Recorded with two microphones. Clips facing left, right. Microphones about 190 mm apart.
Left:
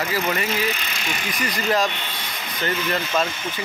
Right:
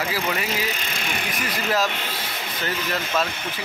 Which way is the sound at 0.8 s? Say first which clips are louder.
Even; 55° right (ahead or behind).